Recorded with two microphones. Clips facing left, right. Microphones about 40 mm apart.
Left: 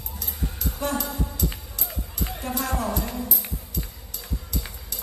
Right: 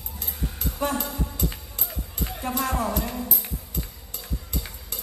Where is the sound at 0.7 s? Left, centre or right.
Centre.